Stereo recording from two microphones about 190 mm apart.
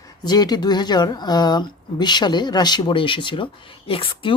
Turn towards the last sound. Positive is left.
turn(degrees=30)  # may be behind; listen again after turning